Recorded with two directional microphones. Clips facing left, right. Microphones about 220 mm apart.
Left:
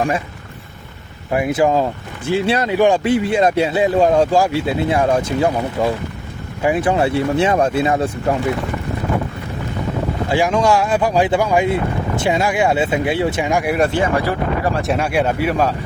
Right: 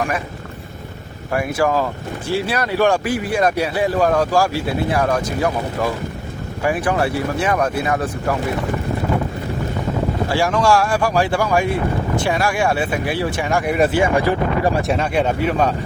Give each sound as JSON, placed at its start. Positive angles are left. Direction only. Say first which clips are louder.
{"t": 1.3, "sound": "speech", "louder": "left 3 dB", "side_deg": 20}
{"t": 10.2, "sound": "speech", "louder": "left 2 dB", "side_deg": 20}
{"t": 13.7, "sound": "speech", "louder": "right 1 dB", "side_deg": -5}
{"t": 14.8, "sound": "speech", "louder": "left 1 dB", "side_deg": 10}